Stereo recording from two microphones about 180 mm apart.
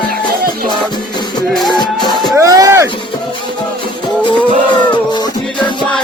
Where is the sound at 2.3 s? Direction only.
20° right (ahead or behind).